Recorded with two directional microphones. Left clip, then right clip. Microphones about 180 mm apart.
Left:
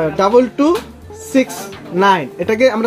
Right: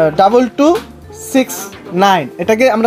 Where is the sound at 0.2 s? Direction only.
45° right (ahead or behind).